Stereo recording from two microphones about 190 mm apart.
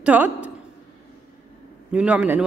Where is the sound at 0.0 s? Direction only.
10° right (ahead or behind).